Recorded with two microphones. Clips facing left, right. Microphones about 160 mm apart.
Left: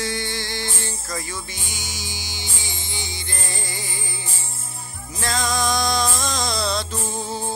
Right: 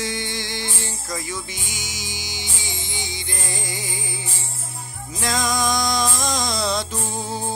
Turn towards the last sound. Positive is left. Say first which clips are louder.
# even
turn(degrees=-15)  # may be behind; listen again after turning